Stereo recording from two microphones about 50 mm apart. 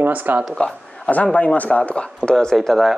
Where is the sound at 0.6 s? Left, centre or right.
Centre.